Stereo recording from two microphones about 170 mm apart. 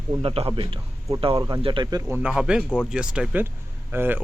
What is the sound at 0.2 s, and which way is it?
A man's voice, 35° right (ahead or behind).